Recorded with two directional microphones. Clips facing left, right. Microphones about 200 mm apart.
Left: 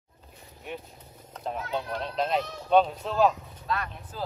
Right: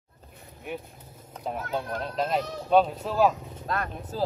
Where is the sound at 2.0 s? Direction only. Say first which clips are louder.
Even; 5° right (ahead or behind).